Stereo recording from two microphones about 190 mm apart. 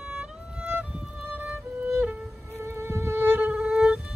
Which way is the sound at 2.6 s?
15° right (ahead or behind).